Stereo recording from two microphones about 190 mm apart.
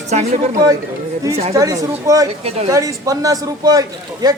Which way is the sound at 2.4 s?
35° right (ahead or behind).